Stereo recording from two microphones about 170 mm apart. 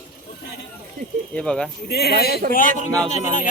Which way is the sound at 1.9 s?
70° left (ahead or behind).